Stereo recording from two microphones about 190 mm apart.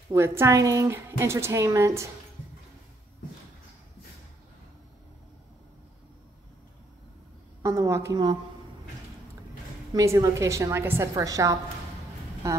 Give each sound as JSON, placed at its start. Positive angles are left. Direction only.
{"t": 0.1, "sound": "a woman's voice", "side_deg": -15}
{"t": 7.6, "sound": "a woman's voice", "side_deg": -15}
{"t": 9.9, "sound": "a woman's voice", "side_deg": -15}